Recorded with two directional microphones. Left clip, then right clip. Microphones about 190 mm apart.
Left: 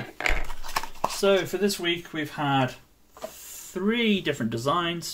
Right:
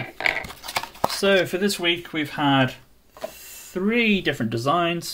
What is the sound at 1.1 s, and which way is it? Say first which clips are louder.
Speech: right 3 dB; 35° right (ahead or behind).